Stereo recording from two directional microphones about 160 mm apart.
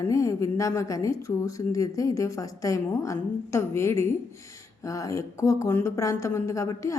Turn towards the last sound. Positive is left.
turn(degrees=20)  # may be behind; listen again after turning